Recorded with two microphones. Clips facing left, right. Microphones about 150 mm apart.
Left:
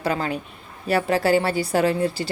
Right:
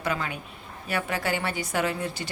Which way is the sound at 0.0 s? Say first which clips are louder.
Left 6 dB; 35° left (ahead or behind).